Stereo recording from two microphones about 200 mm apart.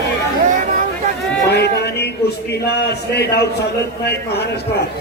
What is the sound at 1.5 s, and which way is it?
A man's voice, 55° left (ahead or behind).